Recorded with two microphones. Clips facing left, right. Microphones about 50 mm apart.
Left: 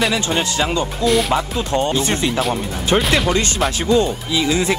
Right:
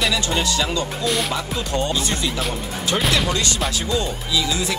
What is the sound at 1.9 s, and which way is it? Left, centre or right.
Speech, left.